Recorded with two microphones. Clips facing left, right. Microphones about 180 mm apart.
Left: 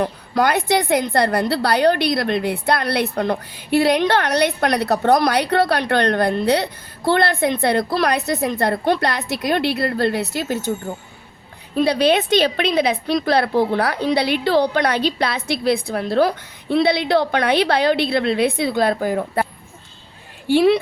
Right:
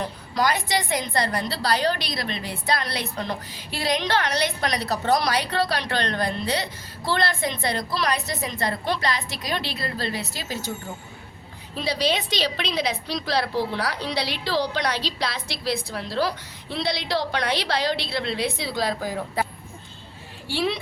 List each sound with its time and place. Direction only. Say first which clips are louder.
0.0 s a woman's voice: left 6 dB; 60° left (ahead or behind)
11.7 s a woman's voice: left 9 dB; 55° left (ahead or behind)
20.5 s a woman's voice: left 11 dB; 50° left (ahead or behind)